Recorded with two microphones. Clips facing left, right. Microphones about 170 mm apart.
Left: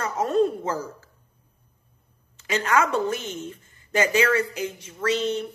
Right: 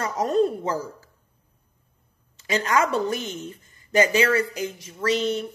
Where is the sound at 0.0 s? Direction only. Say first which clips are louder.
Even; 35° right (ahead or behind).